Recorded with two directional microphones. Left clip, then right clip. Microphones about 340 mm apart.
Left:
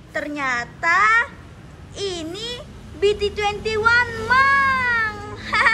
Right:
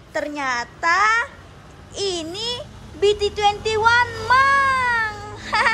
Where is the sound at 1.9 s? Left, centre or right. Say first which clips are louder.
Right 2 dB; centre.